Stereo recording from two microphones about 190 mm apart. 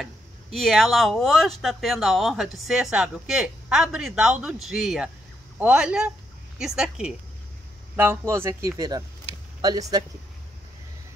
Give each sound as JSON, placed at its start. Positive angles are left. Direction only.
{"t": 0.0, "sound": "speech", "side_deg": 0}